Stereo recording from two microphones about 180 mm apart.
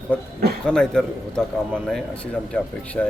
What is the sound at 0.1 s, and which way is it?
A man's voice, 5° left (ahead or behind).